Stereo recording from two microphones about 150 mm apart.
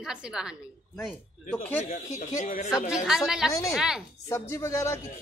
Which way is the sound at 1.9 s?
55° left (ahead or behind).